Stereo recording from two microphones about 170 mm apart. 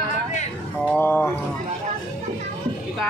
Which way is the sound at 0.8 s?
10° left (ahead or behind).